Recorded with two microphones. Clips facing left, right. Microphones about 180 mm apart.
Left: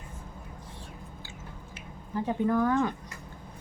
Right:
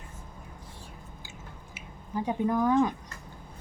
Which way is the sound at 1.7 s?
15° right (ahead or behind).